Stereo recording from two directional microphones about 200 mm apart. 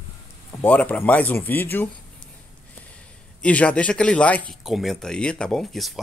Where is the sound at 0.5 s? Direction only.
10° left (ahead or behind).